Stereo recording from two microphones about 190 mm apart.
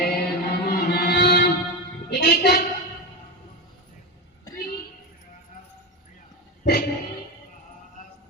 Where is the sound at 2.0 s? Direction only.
55° left (ahead or behind).